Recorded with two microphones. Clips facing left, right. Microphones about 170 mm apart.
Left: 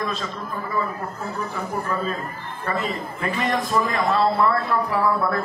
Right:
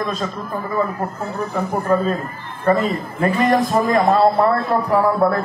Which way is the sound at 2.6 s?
40° right (ahead or behind).